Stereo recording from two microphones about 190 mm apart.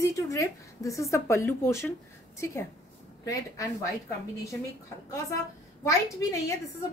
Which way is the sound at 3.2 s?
15° left (ahead or behind).